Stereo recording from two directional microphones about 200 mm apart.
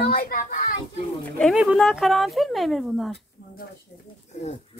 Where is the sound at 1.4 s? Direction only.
5° right (ahead or behind).